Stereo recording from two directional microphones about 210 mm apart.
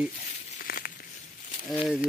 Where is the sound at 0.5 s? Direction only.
45° left (ahead or behind).